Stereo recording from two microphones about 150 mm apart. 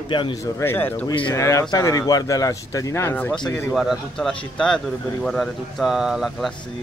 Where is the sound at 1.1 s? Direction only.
30° left (ahead or behind).